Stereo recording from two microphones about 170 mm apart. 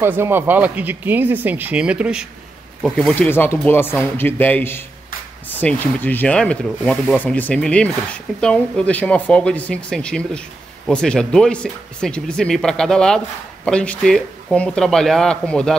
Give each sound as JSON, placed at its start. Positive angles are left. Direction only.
{"t": 0.0, "sound": "speech", "side_deg": -15}